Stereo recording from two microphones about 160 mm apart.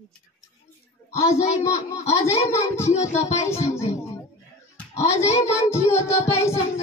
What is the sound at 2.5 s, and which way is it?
Child singing, 15° left (ahead or behind).